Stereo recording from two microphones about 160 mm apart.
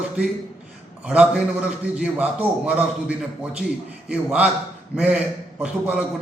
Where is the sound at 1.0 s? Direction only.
5° right (ahead or behind).